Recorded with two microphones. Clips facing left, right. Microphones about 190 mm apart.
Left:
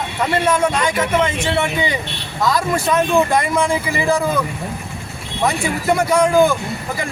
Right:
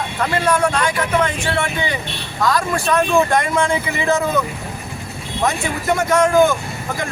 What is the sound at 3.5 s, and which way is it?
Speech, centre (ahead or behind).